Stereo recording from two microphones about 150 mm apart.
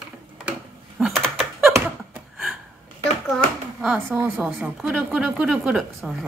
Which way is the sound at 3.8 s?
10° right (ahead or behind).